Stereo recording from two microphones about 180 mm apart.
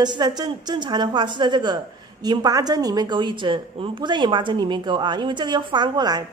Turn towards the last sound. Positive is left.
turn(degrees=-25)  # may be behind; listen again after turning